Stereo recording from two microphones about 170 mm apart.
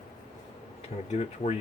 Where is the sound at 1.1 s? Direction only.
40° left (ahead or behind).